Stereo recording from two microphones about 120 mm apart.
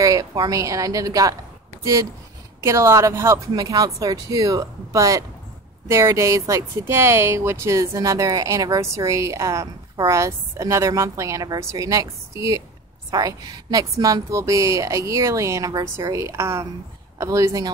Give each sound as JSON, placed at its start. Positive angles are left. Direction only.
{"t": 0.0, "sound": "speech", "side_deg": -30}